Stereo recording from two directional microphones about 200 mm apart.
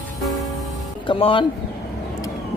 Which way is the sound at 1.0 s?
25° left (ahead or behind).